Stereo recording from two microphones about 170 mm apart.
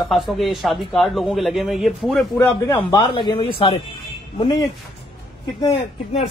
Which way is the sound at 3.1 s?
30° left (ahead or behind).